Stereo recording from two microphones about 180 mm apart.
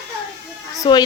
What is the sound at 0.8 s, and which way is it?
Speech, 25° left (ahead or behind).